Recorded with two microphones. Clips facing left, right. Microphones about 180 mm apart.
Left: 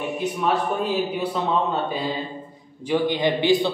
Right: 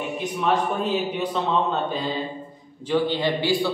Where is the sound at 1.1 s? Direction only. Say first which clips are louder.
Even; 10° left (ahead or behind).